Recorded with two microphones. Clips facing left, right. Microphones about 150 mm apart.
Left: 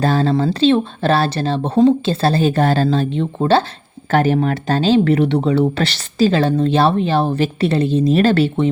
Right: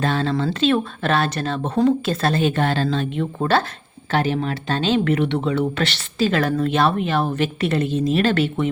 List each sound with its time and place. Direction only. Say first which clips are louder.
0.0 s speech: left 5 dB; 40° left (ahead or behind)
4.1 s speech: left 6 dB; 50° left (ahead or behind)
4.8 s speech: left 5 dB; 35° left (ahead or behind)